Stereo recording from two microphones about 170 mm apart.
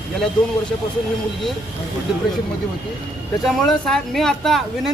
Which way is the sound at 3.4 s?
Centre (ahead or behind).